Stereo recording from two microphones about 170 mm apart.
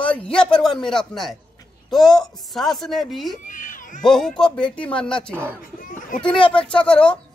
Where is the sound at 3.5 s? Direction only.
50° left (ahead or behind).